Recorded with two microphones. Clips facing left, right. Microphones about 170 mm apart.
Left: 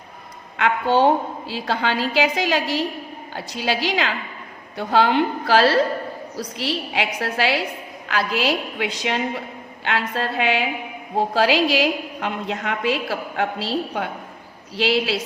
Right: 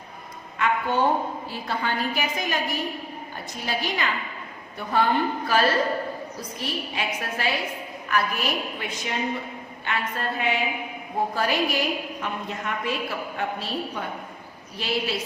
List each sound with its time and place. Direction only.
0.5 s a woman's voice: 90° left